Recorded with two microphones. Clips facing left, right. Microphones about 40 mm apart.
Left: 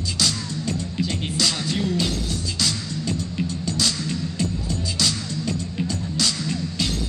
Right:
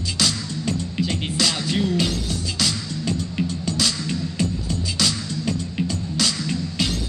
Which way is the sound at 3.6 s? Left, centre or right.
Centre.